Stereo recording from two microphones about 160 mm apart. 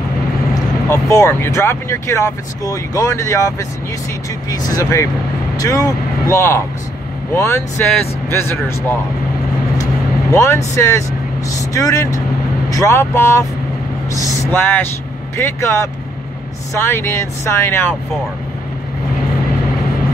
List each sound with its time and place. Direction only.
0.8 s speech: 20° left (ahead or behind)
10.3 s speech: 20° left (ahead or behind)
14.5 s speech: 15° left (ahead or behind)